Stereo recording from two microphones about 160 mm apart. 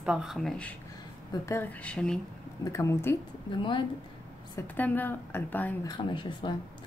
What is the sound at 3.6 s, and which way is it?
Speech, 30° left (ahead or behind).